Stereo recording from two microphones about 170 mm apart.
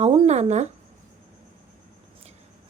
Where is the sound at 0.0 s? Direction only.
40° right (ahead or behind).